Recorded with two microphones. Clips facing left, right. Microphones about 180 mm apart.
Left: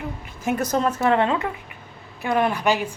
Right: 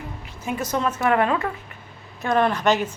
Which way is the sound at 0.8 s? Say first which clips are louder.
Even; 30° left (ahead or behind).